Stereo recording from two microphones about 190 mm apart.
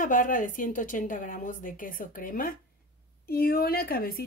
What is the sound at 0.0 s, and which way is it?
Speech, 45° left (ahead or behind).